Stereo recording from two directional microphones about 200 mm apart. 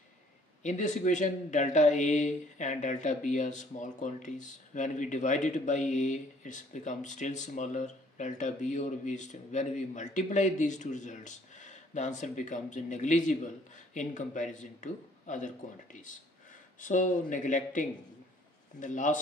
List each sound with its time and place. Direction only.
0.6 s a man's voice: 35° left (ahead or behind)